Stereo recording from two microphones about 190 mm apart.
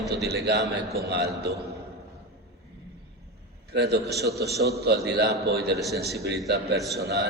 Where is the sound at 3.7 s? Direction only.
60° right (ahead or behind).